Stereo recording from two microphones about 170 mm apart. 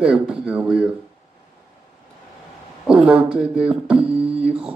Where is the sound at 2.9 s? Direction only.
5° right (ahead or behind).